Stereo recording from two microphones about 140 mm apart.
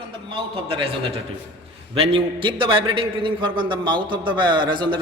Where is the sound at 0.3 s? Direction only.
40° right (ahead or behind).